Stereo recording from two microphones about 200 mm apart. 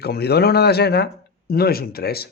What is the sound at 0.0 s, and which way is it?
Speech, 55° left (ahead or behind).